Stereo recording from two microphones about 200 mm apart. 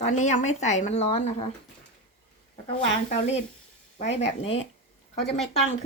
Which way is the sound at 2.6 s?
30° left (ahead or behind).